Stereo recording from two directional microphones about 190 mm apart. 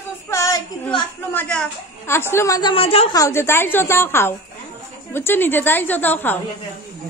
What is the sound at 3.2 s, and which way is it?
Speech, 15° left (ahead or behind).